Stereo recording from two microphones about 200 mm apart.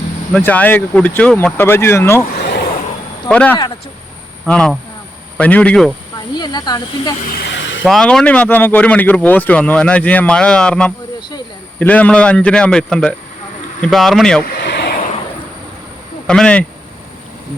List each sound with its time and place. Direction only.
0.3 s speech: 10° left (ahead or behind)
3.2 s a man's voice: 5° left (ahead or behind)
6.3 s speech: 20° left (ahead or behind)
7.3 s a sound: 60° left (ahead or behind)
7.9 s a man's voice: centre (ahead or behind)
14.5 s a sound: 55° left (ahead or behind)
16.2 s speech: 5° left (ahead or behind)